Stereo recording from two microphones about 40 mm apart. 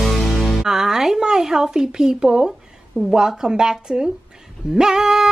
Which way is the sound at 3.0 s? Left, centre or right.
Centre.